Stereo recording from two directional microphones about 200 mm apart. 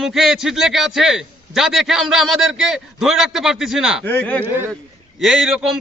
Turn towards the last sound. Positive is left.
turn(degrees=0)  # may be behind; listen again after turning